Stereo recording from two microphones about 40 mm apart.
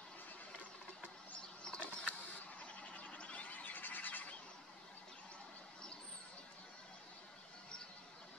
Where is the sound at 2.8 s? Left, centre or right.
Left.